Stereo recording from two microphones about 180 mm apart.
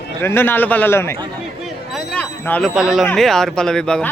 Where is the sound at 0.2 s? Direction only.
10° left (ahead or behind).